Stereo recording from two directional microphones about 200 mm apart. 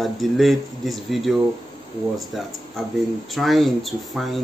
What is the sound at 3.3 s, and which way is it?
Speech, centre (ahead or behind).